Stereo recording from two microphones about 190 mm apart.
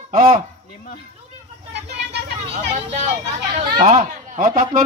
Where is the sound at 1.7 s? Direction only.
60° right (ahead or behind).